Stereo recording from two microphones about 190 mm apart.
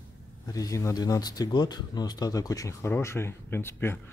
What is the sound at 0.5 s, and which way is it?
Speech, 15° left (ahead or behind).